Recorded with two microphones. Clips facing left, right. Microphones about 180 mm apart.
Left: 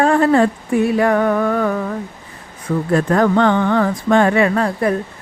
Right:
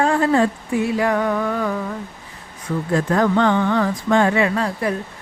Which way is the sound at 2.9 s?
60° left (ahead or behind).